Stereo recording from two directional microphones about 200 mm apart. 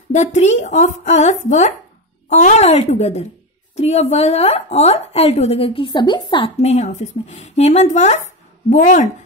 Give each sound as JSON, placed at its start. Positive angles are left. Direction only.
{"t": 0.1, "sound": "a woman's voice", "side_deg": 35}